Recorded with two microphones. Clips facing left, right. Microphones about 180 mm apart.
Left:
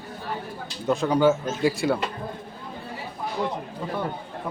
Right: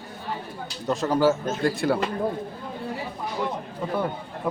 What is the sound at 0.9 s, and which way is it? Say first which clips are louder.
Speech: left 1 dB; centre (ahead or behind).